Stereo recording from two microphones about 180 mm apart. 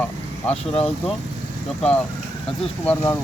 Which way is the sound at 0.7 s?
30° left (ahead or behind).